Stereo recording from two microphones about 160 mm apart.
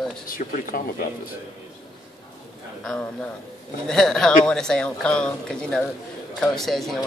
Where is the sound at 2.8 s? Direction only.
5° left (ahead or behind).